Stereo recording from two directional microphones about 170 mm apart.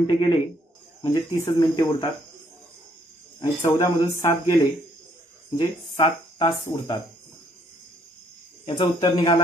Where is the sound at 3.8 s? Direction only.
15° left (ahead or behind).